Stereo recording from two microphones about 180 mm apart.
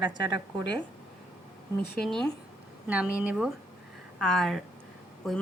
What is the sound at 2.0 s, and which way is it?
Speech, 5° left (ahead or behind).